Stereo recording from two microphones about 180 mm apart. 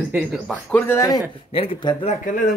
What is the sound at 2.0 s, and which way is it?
Speech, 45° left (ahead or behind).